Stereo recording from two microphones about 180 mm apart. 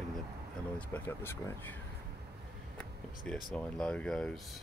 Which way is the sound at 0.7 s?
10° left (ahead or behind).